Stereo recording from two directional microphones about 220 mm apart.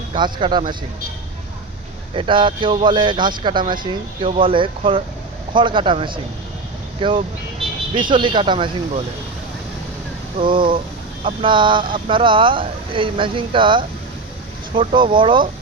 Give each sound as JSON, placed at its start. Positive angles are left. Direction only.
{"t": 0.1, "sound": "speech", "side_deg": -25}
{"t": 2.1, "sound": "speech", "side_deg": -25}
{"t": 10.3, "sound": "speech", "side_deg": -25}